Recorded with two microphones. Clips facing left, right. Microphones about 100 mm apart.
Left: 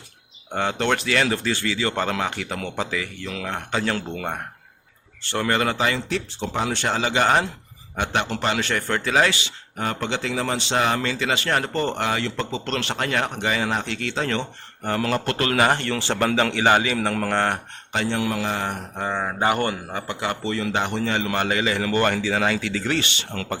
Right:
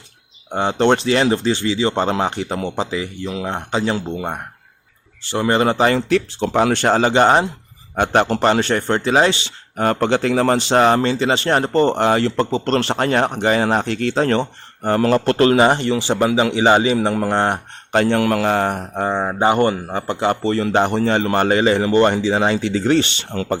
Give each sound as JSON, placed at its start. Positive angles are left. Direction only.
{"t": 0.5, "sound": "speech", "side_deg": -25}
{"t": 5.7, "sound": "speech", "side_deg": -40}
{"t": 6.1, "sound": "speech", "side_deg": -70}
{"t": 6.8, "sound": "speech", "side_deg": -40}
{"t": 7.9, "sound": "speech", "side_deg": -45}
{"t": 9.7, "sound": "speech", "side_deg": -50}
{"t": 17.9, "sound": "a man's voice", "side_deg": -55}
{"t": 19.1, "sound": "speech", "side_deg": -25}